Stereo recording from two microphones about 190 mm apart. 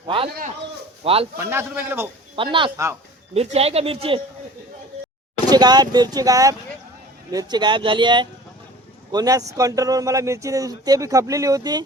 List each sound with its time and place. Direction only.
1.0 s speech: 30° right (ahead or behind)
1.4 s speech: 10° right (ahead or behind)
2.3 s speech: 25° right (ahead or behind)
5.5 s speech: 20° right (ahead or behind)